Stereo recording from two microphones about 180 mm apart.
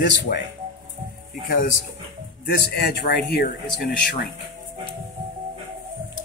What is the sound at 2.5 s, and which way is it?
Speech, 60° left (ahead or behind).